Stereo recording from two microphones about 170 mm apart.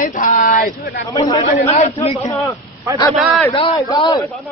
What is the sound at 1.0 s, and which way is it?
Speech, 25° left (ahead or behind).